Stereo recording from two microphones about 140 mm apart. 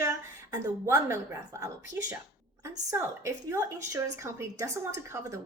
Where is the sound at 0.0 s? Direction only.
25° right (ahead or behind).